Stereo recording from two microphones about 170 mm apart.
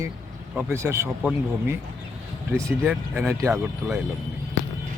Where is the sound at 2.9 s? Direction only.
15° right (ahead or behind).